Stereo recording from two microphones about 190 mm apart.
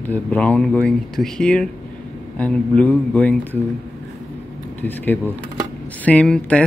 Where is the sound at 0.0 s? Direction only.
10° left (ahead or behind).